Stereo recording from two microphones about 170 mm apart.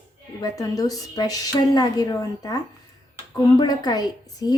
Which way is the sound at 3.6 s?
25° left (ahead or behind).